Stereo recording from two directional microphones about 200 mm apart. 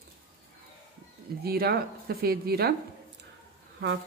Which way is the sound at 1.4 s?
50° right (ahead or behind).